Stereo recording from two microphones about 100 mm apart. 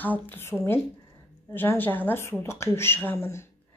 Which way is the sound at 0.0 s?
20° left (ahead or behind).